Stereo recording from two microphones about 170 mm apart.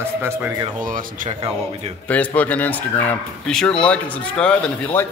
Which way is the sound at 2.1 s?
10° left (ahead or behind).